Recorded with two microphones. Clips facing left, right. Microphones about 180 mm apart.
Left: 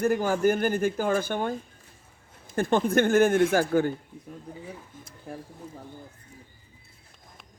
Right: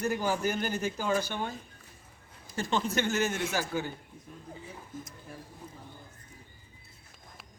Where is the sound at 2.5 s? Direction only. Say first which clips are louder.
Left 8 dB; 55° left (ahead or behind).